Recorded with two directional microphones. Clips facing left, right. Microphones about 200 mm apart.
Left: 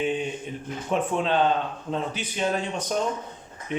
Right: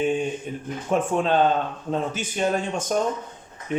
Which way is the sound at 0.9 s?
45° right (ahead or behind).